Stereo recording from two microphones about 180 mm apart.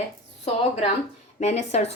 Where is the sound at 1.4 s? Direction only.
35° left (ahead or behind).